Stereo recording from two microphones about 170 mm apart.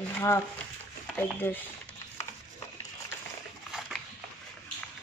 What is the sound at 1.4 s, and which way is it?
Speech, 10° left (ahead or behind).